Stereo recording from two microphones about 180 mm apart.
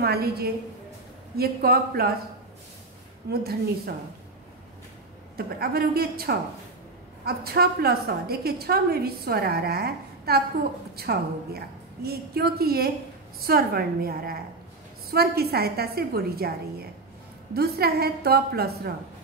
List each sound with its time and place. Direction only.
0.0 s a woman's voice: 60° right (ahead or behind)
3.3 s a woman's voice: 60° right (ahead or behind)
5.6 s a woman's voice: 60° right (ahead or behind)
17.6 s a woman's voice: 60° right (ahead or behind)